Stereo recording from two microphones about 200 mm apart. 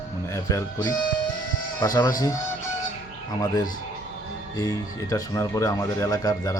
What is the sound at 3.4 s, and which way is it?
Speech, 20° left (ahead or behind).